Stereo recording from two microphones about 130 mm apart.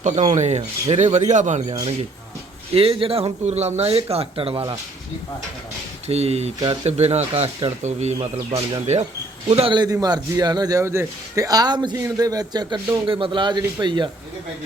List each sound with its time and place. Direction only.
0.0 s speech: 70° right (ahead or behind)
2.7 s speech: 45° right (ahead or behind)
6.1 s speech: 55° right (ahead or behind)
9.5 s a man's voice: 40° right (ahead or behind)